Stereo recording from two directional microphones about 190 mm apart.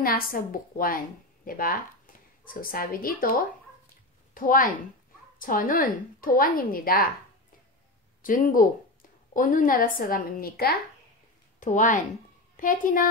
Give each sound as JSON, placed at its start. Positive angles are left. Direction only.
{"t": 0.0, "sound": "a woman's voice", "side_deg": 50}
{"t": 8.2, "sound": "a woman's voice", "side_deg": 45}
{"t": 11.6, "sound": "a woman's voice", "side_deg": 45}